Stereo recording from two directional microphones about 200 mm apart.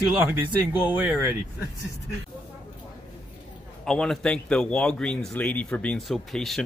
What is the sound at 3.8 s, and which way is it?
Speech, 5° left (ahead or behind).